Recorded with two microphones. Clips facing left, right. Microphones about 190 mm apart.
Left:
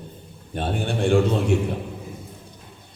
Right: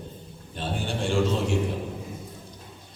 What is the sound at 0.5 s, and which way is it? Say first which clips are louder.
Speech: left 5 dB; 55° left (ahead or behind).